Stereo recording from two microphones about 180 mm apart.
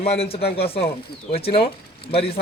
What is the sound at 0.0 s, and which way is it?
A man's voice, 30° left (ahead or behind).